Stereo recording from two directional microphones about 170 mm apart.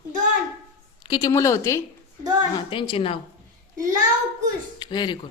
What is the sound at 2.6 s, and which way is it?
Speech, 30° left (ahead or behind).